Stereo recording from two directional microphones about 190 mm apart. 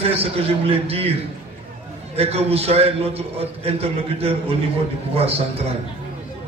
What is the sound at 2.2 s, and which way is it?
A man's voice, 35° right (ahead or behind).